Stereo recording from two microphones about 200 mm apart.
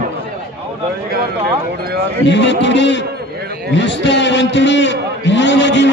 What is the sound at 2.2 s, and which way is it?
A man's voice, 60° left (ahead or behind).